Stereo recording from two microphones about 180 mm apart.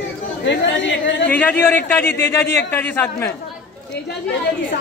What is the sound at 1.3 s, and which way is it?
A man's voice, 10° left (ahead or behind).